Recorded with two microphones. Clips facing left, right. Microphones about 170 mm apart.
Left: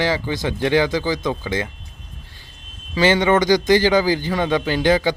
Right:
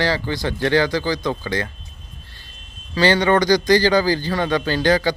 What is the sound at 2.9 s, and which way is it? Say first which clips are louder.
A man's voice: even; 20° left (ahead or behind).